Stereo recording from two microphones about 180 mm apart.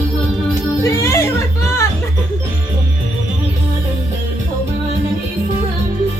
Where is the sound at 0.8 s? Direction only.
15° left (ahead or behind).